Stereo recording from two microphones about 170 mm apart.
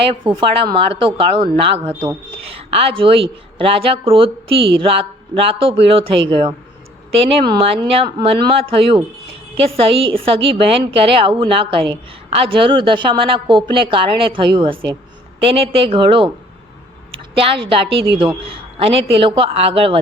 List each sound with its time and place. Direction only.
0.3 s a woman's voice: 30° right (ahead or behind)
17.3 s a woman's voice: 30° right (ahead or behind)